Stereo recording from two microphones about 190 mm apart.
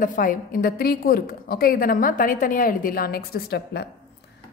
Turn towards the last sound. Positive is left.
turn(degrees=60)  # may be behind; listen again after turning